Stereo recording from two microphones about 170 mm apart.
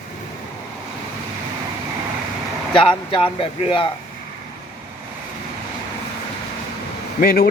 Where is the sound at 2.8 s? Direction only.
30° left (ahead or behind).